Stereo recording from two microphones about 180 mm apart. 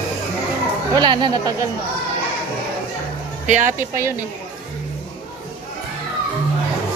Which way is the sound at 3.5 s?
45° right (ahead or behind).